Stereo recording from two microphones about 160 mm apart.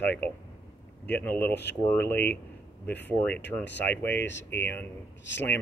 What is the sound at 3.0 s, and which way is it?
Speech, 10° left (ahead or behind).